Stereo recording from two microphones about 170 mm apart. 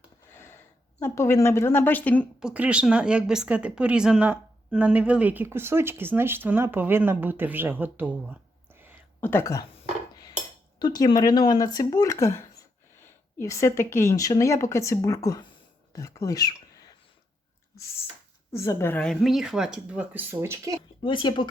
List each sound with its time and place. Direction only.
0.3 s speech: 15° left (ahead or behind)
2.4 s speech: 5° right (ahead or behind)
9.2 s speech: 15° left (ahead or behind)
10.8 s speech: 25° left (ahead or behind)
18.5 s a woman's voice: 15° left (ahead or behind); by 20.7 s 15° right (ahead or behind)
21.0 s speech: 30° left (ahead or behind)